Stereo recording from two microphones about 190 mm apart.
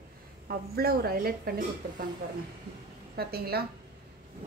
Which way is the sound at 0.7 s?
55° right (ahead or behind).